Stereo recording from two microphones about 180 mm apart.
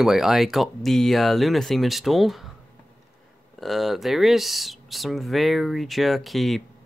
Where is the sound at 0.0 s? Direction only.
Centre (ahead or behind).